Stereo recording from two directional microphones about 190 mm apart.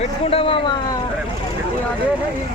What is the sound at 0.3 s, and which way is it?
Speech, 30° left (ahead or behind).